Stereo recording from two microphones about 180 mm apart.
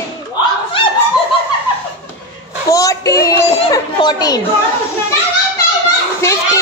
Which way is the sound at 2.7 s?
20° left (ahead or behind).